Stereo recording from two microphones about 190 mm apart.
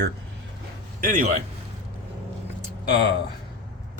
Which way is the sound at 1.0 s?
45° right (ahead or behind).